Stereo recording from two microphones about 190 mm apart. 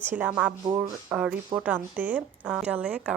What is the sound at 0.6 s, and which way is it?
Speech, 20° right (ahead or behind).